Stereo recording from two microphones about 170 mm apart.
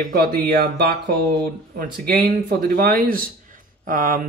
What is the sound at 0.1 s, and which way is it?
Speech, 65° right (ahead or behind).